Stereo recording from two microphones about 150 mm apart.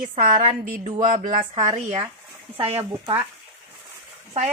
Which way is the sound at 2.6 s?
20° right (ahead or behind).